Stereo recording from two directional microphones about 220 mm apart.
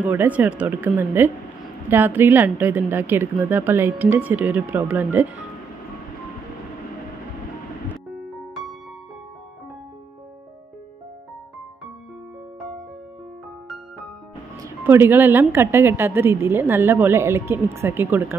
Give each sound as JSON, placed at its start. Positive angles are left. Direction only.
{"t": 0.0, "sound": "a woman's voice", "side_deg": -5}
{"t": 8.1, "sound": "music", "side_deg": 0}
{"t": 14.6, "sound": "a woman's voice", "side_deg": -10}